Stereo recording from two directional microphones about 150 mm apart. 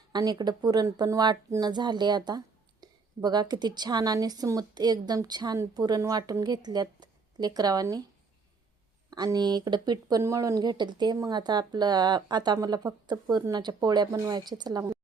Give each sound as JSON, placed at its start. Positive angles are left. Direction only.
{"t": 0.1, "sound": "speech", "side_deg": -25}
{"t": 9.0, "sound": "speech", "side_deg": -25}